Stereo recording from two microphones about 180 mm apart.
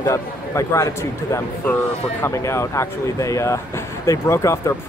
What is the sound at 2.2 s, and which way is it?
Speech, 15° left (ahead or behind).